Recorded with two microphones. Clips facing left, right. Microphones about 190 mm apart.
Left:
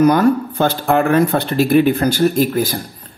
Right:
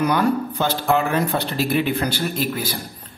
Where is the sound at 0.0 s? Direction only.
45° left (ahead or behind).